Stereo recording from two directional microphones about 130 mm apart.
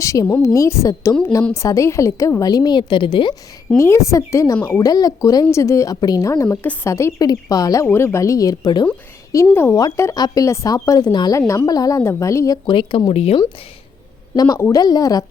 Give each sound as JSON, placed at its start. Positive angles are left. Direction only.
{"t": 0.0, "sound": "speech", "side_deg": 25}
{"t": 3.8, "sound": "speech", "side_deg": 20}
{"t": 9.3, "sound": "speech", "side_deg": 20}
{"t": 12.6, "sound": "speech", "side_deg": 40}
{"t": 14.3, "sound": "a woman's voice", "side_deg": 30}